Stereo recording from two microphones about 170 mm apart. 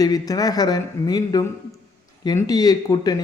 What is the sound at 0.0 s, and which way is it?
Speech, 20° left (ahead or behind).